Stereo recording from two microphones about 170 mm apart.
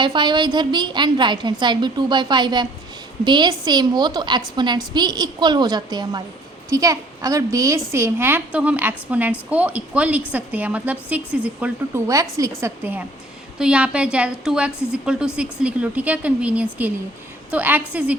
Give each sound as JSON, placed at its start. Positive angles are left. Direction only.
{"t": 0.0, "sound": "a woman's voice", "side_deg": -25}